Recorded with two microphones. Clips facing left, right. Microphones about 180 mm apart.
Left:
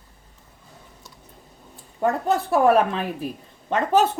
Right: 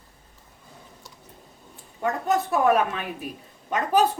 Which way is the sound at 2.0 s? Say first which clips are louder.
Left 3 dB; 35° left (ahead or behind).